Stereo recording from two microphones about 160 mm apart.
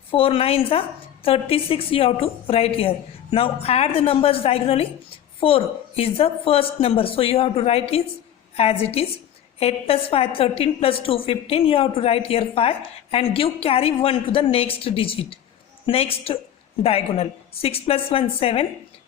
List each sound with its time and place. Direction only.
0.1 s a woman's voice: 35° left (ahead or behind)